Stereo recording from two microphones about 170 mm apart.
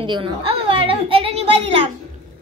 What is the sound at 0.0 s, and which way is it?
A child's voice, 30° right (ahead or behind).